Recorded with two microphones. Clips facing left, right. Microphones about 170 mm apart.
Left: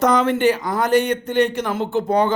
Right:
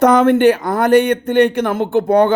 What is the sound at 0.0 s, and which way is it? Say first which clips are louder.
Speech: right 6 dB; 55° right (ahead or behind).